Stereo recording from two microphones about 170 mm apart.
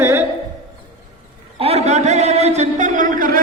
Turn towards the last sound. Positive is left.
turn(degrees=-55)  # may be behind; listen again after turning